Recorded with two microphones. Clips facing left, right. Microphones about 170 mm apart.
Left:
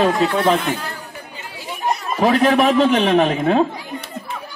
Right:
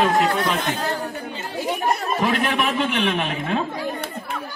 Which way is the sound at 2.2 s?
40° left (ahead or behind).